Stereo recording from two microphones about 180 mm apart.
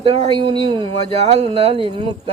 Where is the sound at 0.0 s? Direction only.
35° right (ahead or behind).